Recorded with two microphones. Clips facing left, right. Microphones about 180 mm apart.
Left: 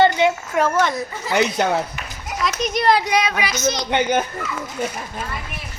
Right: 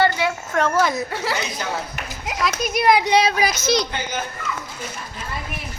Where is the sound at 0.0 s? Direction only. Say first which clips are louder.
Left 4 dB; 20° left (ahead or behind).